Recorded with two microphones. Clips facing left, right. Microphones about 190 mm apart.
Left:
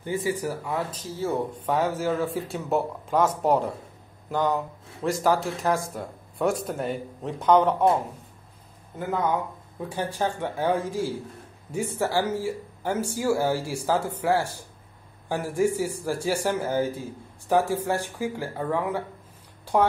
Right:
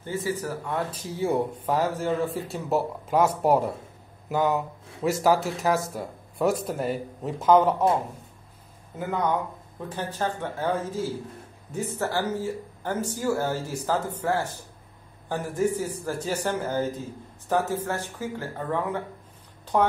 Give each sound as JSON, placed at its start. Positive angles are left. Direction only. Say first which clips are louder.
{"t": 0.0, "sound": "speech", "louder": "left 2 dB", "side_deg": 15}
{"t": 0.9, "sound": "speech", "louder": "right 2 dB", "side_deg": -15}
{"t": 1.7, "sound": "speech", "louder": "left 1 dB", "side_deg": 0}
{"t": 8.9, "sound": "speech", "louder": "left 1 dB", "side_deg": 0}
{"t": 9.8, "sound": "speech", "louder": "left 2 dB", "side_deg": 10}
{"t": 19.6, "sound": "a sound", "louder": "left 1 dB", "side_deg": 10}